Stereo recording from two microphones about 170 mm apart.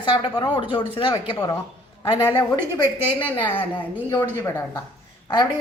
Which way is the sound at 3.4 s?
10° left (ahead or behind).